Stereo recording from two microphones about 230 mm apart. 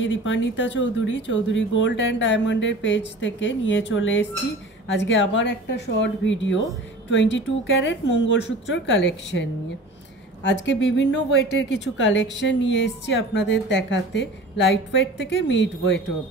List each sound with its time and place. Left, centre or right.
0.0 s speech: left